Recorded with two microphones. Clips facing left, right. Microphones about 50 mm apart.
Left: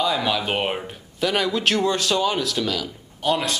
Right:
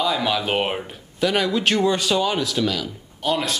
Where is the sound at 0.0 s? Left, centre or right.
Centre.